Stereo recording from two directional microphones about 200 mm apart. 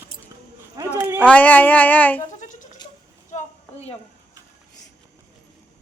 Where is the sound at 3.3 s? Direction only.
30° left (ahead or behind).